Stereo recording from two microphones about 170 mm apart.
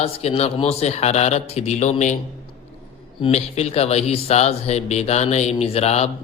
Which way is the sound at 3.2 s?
40° left (ahead or behind).